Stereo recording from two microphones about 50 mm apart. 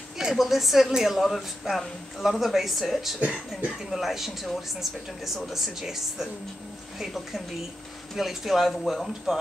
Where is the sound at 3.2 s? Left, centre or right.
Right.